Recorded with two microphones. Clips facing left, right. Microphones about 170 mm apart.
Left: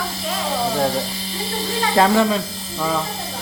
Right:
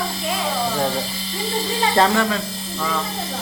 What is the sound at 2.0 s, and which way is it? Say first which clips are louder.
Speech: left 2 dB; 5° left (ahead or behind).